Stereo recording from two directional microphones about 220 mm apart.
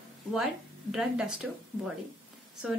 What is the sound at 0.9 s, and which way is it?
Speech, 5° right (ahead or behind).